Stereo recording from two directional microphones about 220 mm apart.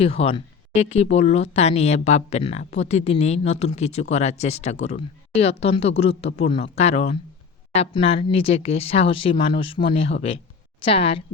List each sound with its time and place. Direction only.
0.0 s speech: 25° left (ahead or behind)